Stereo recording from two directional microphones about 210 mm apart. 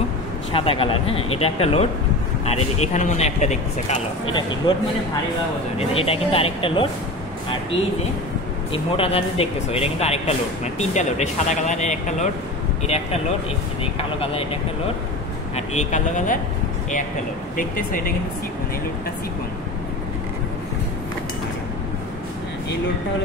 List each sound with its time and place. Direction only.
0.5 s speech: 25° left (ahead or behind)
2.9 s speech: 35° left (ahead or behind)
4.3 s speech: 20° left (ahead or behind)
5.8 s speech: 25° left (ahead or behind)
8.7 s speech: 25° left (ahead or behind)
15.5 s speech: 35° left (ahead or behind)
17.6 s speech: 40° left (ahead or behind)